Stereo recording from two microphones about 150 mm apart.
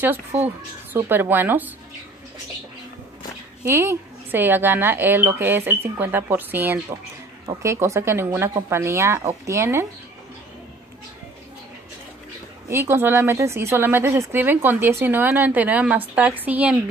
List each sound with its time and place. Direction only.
0.9 s speech: 15° right (ahead or behind)
3.6 s speech: 15° right (ahead or behind)
12.6 s speech: 15° right (ahead or behind)